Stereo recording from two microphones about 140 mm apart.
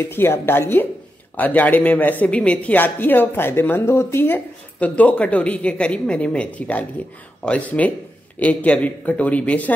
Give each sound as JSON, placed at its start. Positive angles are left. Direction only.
{"t": 0.0, "sound": "speech", "side_deg": 15}